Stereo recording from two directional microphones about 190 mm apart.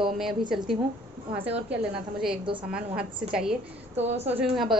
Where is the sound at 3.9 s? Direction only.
35° right (ahead or behind).